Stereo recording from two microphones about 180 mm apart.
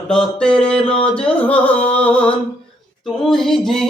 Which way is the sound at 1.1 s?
5° left (ahead or behind).